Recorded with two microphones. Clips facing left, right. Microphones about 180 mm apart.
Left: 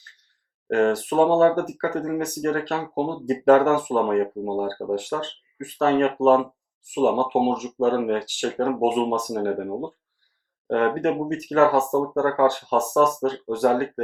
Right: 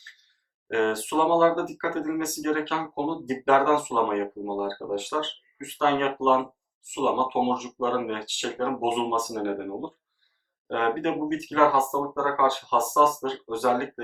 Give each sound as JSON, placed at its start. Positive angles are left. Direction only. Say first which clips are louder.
{"t": 0.7, "sound": "speech", "louder": "left 4 dB", "side_deg": 40}
{"t": 10.7, "sound": "speech", "louder": "left 4 dB", "side_deg": 45}